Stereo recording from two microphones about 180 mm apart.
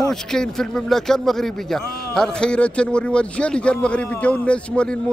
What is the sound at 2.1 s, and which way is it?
A man's voice, 5° left (ahead or behind).